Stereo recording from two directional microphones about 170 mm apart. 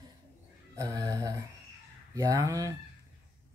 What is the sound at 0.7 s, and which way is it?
A man's voice, 20° right (ahead or behind).